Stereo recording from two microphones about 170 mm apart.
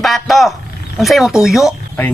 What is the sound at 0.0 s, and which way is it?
Speech, centre (ahead or behind).